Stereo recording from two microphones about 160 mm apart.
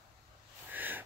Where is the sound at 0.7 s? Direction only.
10° right (ahead or behind).